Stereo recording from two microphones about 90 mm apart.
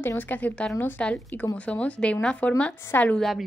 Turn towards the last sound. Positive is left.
turn(degrees=0)  # may be behind; listen again after turning